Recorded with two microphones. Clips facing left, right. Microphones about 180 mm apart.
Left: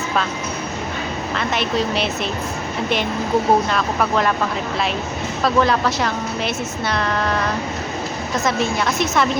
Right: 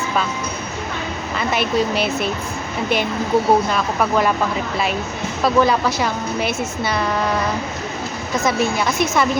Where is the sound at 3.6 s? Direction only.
5° right (ahead or behind).